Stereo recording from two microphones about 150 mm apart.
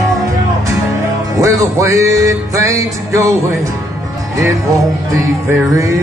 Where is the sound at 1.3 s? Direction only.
20° right (ahead or behind).